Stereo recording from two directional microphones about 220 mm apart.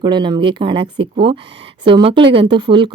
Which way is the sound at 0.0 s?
20° right (ahead or behind).